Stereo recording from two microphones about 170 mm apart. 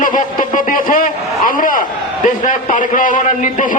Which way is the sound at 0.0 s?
50° left (ahead or behind).